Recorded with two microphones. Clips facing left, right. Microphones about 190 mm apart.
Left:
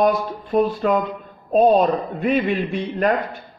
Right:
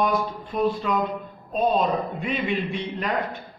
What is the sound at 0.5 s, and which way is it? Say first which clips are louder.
Speech: left 5 dB; 45° left (ahead or behind).